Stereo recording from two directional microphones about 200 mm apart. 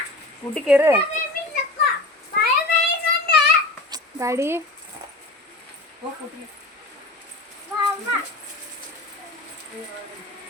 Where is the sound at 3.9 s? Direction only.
15° right (ahead or behind).